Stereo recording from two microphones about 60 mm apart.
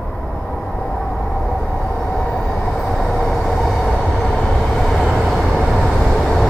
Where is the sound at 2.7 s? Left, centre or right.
Centre.